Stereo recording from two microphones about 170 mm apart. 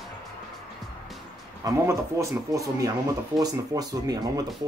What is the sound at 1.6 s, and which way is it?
Speech, 15° right (ahead or behind).